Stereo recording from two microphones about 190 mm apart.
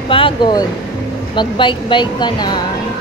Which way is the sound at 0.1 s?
25° left (ahead or behind).